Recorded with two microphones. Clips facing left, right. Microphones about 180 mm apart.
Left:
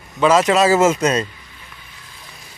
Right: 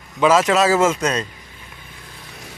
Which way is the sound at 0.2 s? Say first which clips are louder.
Left 1 dB; 5° right (ahead or behind).